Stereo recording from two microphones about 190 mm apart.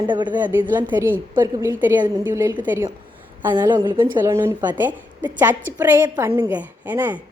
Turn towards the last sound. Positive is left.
turn(degrees=-10)  # may be behind; listen again after turning